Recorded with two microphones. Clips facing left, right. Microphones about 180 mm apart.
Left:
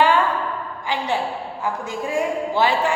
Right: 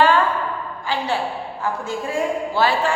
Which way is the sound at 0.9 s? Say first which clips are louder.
Even; 20° left (ahead or behind).